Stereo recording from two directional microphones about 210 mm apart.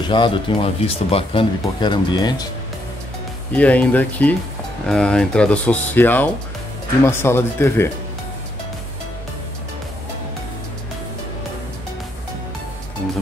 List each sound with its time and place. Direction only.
0.1 s speech: 25° left (ahead or behind)
3.5 s speech: 5° left (ahead or behind)